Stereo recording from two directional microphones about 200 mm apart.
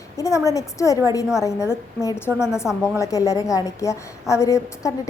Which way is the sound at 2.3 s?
5° right (ahead or behind).